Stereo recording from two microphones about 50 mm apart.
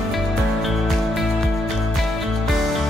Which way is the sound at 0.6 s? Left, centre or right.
Centre.